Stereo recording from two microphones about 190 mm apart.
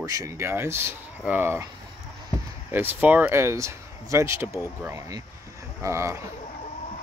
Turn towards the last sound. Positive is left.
turn(degrees=-15)  # may be behind; listen again after turning